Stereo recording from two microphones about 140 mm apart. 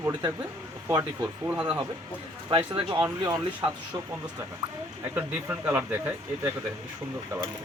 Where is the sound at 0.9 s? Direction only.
30° right (ahead or behind).